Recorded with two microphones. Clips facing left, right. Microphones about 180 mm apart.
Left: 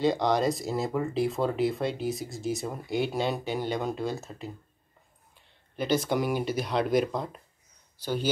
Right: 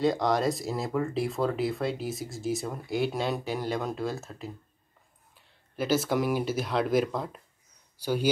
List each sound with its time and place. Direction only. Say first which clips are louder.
0.0 s speech: left 1 dB; centre (ahead or behind)
5.8 s speech: even; 5° right (ahead or behind)